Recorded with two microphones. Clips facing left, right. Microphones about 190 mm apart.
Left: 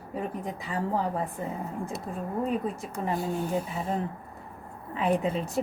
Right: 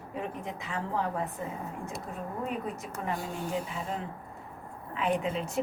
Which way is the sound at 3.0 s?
30° left (ahead or behind).